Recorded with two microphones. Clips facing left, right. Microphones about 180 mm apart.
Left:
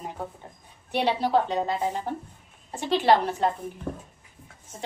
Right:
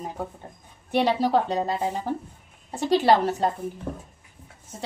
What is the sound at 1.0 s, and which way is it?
Speech, 45° right (ahead or behind).